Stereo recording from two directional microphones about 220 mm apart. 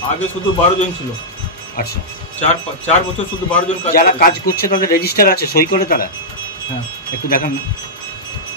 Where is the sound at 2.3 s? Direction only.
30° left (ahead or behind).